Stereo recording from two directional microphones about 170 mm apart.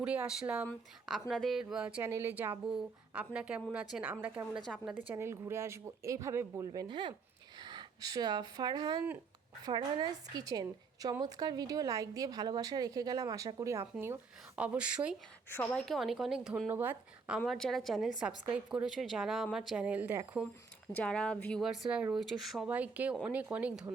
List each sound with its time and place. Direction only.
0.0 s speech: 5° right (ahead or behind)
4.5 s a woman's voice: centre (ahead or behind)
5.0 s speech: 15° right (ahead or behind)
6.8 s a woman's voice: 25° right (ahead or behind); by 15.1 s 5° right (ahead or behind)
15.4 s a woman's voice: 15° left (ahead or behind)
15.9 s a woman's voice: centre (ahead or behind)
20.9 s a woman's voice: 5° left (ahead or behind)